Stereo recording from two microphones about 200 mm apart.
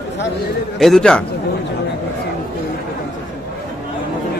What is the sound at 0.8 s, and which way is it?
Speech, centre (ahead or behind).